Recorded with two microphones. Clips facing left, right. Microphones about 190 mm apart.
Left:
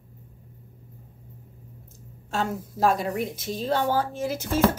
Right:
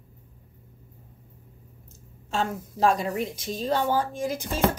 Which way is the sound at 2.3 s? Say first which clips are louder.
Even; 10° left (ahead or behind).